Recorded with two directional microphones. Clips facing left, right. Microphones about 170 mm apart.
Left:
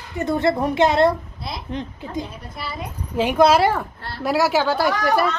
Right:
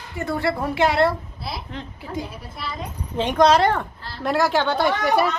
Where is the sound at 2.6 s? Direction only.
Centre (ahead or behind).